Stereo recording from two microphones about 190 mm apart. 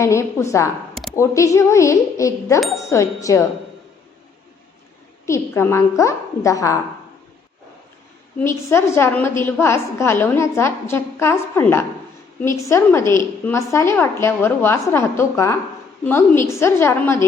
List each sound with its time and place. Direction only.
0.0 s a woman's voice: 15° left (ahead or behind)
5.2 s a woman's voice: 15° left (ahead or behind)
8.4 s a woman's voice: 15° left (ahead or behind)